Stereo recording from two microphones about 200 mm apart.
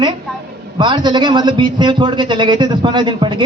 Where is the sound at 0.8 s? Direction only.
20° right (ahead or behind).